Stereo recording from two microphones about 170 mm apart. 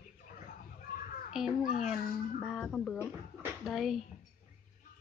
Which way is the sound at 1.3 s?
5° right (ahead or behind).